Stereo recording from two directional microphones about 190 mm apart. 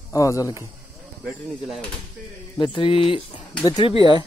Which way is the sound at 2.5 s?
25° left (ahead or behind).